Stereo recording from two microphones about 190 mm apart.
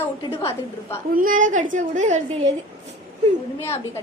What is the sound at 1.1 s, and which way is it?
A woman's voice, 45° right (ahead or behind).